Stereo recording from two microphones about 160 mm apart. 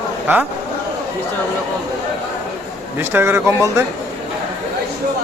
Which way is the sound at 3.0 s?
15° right (ahead or behind).